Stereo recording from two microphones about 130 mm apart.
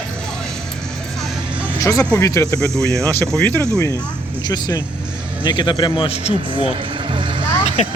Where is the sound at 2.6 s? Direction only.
25° right (ahead or behind).